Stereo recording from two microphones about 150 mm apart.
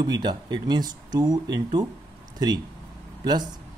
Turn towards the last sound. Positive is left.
turn(degrees=-25)  # may be behind; listen again after turning